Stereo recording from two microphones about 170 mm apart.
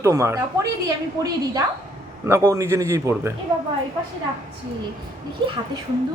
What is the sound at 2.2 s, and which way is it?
Speech, 15° right (ahead or behind).